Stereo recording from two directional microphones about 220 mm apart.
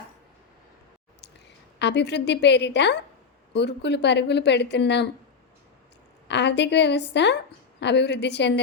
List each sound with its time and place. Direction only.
1.8 s a woman's voice: 50° left (ahead or behind)
6.2 s a woman's voice: 50° left (ahead or behind)